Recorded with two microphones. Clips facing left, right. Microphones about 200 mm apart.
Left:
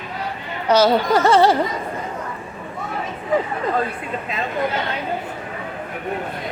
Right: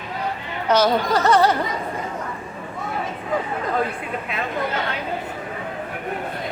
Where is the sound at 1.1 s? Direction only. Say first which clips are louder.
Left 2 dB; 25° left (ahead or behind).